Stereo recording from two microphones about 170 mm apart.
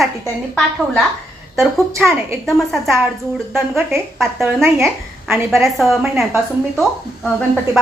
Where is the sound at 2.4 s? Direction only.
Centre (ahead or behind).